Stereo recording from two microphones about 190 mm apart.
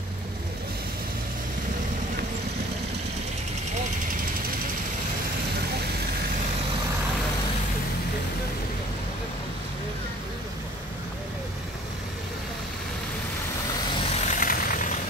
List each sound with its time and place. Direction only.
14.1 s vehicle: 40° left (ahead or behind)